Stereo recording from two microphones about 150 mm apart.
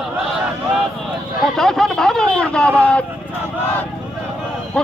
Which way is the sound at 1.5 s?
Centre (ahead or behind).